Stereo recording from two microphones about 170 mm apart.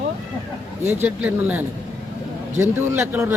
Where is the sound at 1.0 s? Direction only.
10° right (ahead or behind).